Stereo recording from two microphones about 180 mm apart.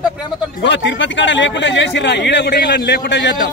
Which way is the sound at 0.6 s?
90° left.